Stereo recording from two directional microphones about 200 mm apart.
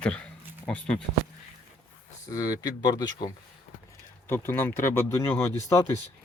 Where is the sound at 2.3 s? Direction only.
15° left (ahead or behind).